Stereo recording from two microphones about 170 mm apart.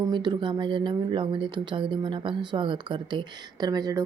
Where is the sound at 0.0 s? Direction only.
25° right (ahead or behind).